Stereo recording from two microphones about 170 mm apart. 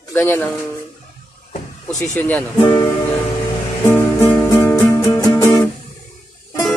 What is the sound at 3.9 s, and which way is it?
Music, 15° left (ahead or behind).